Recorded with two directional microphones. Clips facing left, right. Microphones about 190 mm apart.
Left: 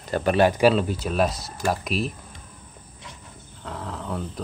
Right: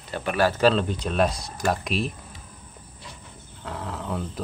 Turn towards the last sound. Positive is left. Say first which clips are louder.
# even
turn(degrees=0)  # may be behind; listen again after turning